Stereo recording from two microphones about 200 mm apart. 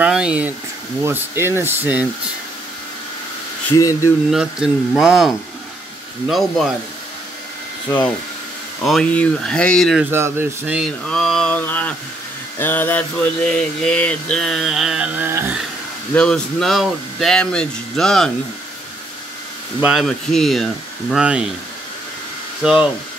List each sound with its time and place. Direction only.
0.0 s speech: 5° right (ahead or behind)
3.7 s speech: 15° left (ahead or behind)
4.3 s speech: 5° right (ahead or behind)
7.9 s speech: 10° left (ahead or behind)
10.1 s speech: 10° right (ahead or behind)
16.2 s speech: 5° left (ahead or behind)
19.8 s speech: centre (ahead or behind)
22.6 s speech: 5° right (ahead or behind)